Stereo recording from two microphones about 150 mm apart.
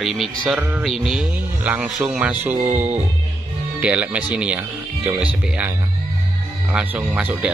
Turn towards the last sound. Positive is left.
turn(degrees=-10)  # may be behind; listen again after turning